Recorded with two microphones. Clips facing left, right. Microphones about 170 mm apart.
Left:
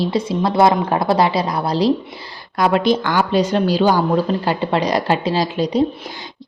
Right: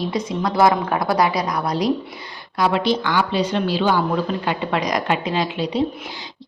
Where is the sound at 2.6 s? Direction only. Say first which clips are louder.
Left 3 dB; 50° left (ahead or behind).